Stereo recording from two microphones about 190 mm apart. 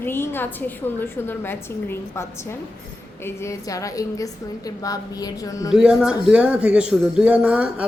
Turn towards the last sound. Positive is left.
turn(degrees=-5)  # may be behind; listen again after turning